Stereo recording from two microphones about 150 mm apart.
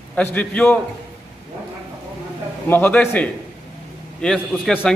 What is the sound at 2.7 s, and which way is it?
Speech, 15° left (ahead or behind).